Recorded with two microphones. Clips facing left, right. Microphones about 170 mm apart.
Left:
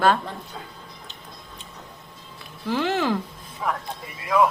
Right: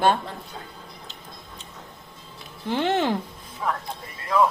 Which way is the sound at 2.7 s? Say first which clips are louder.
Even; 25° right (ahead or behind).